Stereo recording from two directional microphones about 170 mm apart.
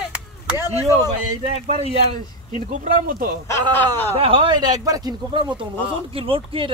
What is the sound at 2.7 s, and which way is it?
Speech, 55° right (ahead or behind).